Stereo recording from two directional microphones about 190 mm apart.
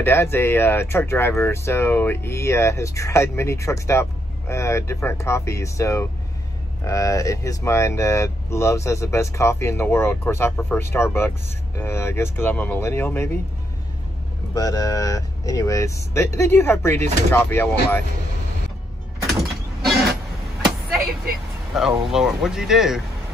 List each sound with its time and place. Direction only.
0.0 s speech: 10° left (ahead or behind)
14.5 s speech: 20° left (ahead or behind)
21.7 s speech: centre (ahead or behind)